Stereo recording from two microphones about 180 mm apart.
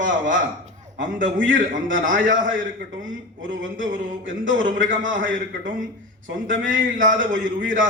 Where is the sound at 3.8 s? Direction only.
90° right.